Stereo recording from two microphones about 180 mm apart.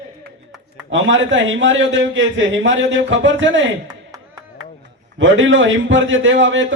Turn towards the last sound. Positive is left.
turn(degrees=-90)